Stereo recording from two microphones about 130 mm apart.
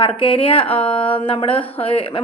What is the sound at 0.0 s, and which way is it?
A woman's voice, 45° left (ahead or behind).